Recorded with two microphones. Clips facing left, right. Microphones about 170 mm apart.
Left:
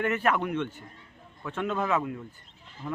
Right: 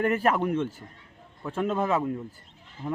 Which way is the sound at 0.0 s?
35° right (ahead or behind).